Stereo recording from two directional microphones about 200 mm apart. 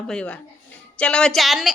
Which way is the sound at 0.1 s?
5° left (ahead or behind).